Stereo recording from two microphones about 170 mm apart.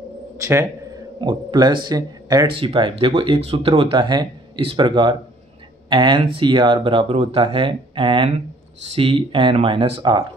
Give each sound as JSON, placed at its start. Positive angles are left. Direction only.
{"t": 0.4, "sound": "a man's voice", "side_deg": -15}
{"t": 1.2, "sound": "speech", "side_deg": -25}